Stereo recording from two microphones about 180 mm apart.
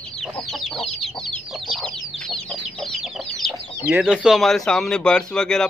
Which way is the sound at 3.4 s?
Centre (ahead or behind).